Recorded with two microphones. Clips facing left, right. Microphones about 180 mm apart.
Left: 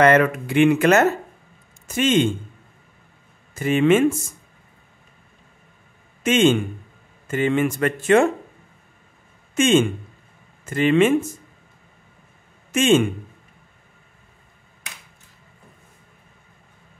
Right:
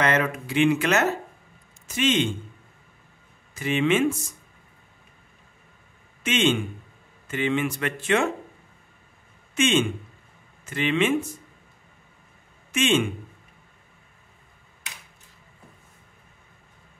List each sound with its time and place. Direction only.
0.0 s speech: 55° left (ahead or behind)
3.5 s speech: 45° left (ahead or behind)
6.2 s speech: 45° left (ahead or behind)
9.6 s speech: 45° left (ahead or behind)
12.7 s speech: 45° left (ahead or behind)